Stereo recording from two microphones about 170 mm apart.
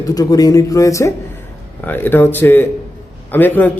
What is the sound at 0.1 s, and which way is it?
A man's voice, 20° left (ahead or behind).